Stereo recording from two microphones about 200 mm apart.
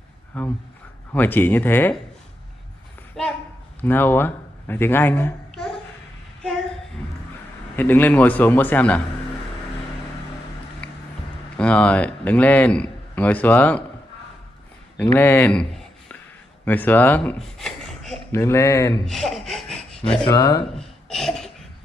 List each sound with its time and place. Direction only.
0.3 s a man's voice: 5° left (ahead or behind)
3.2 s a man's voice: centre (ahead or behind)
7.7 s a man's voice: 10° left (ahead or behind)
11.5 s a man's voice: 5° left (ahead or behind)
15.0 s a man's voice: 10° left (ahead or behind)
16.6 s speech: 10° left (ahead or behind)
18.3 s a man's voice: 15° left (ahead or behind)
19.0 s speech: centre (ahead or behind)
20.2 s speech: 20° left (ahead or behind)
20.7 s a sound: centre (ahead or behind)